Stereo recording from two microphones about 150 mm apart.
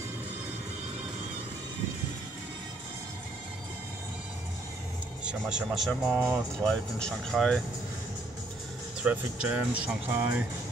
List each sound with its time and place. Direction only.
5.2 s speech: 5° right (ahead or behind)
6.6 s speech: 5° left (ahead or behind)
9.0 s speech: 10° right (ahead or behind)